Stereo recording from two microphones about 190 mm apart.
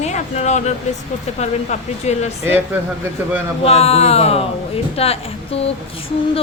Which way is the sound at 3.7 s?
30° left (ahead or behind).